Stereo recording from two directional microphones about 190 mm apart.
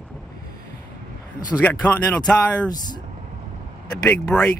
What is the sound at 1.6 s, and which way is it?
Speech, 5° left (ahead or behind).